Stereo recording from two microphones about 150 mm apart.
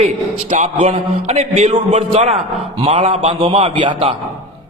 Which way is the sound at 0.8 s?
45° right (ahead or behind).